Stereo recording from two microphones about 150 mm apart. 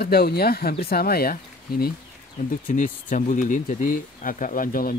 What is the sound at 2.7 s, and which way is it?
Speech, 60° left (ahead or behind).